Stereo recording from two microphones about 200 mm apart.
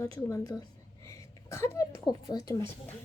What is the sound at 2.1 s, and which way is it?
Speech, 20° left (ahead or behind).